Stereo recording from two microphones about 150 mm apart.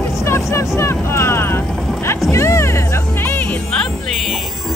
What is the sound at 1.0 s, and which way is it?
Music, 15° left (ahead or behind).